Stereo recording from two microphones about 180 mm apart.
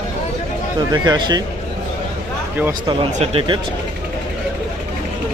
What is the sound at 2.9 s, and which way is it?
Speech, 35° right (ahead or behind).